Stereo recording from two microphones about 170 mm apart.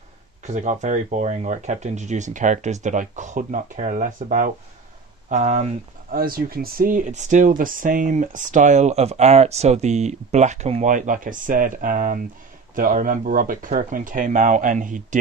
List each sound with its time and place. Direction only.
0.4 s speech: 45° right (ahead or behind)
6.1 s speech: 60° right (ahead or behind)